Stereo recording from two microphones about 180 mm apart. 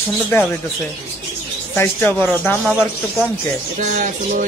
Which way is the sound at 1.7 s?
10° left (ahead or behind).